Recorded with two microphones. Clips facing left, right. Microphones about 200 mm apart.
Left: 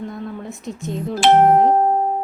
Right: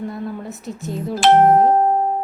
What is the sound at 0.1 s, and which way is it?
Speech, 5° right (ahead or behind).